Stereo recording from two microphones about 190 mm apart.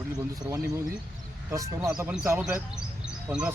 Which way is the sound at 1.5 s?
15° right (ahead or behind).